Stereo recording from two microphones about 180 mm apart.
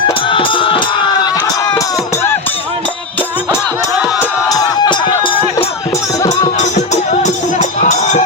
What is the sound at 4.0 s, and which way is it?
Music, 5° right (ahead or behind).